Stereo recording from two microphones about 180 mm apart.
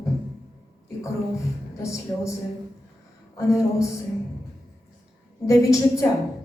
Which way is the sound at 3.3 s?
15° left (ahead or behind).